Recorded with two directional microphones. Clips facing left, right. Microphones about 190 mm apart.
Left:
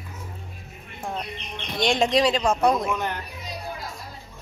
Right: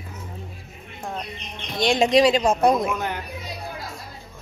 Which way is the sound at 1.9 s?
15° right (ahead or behind).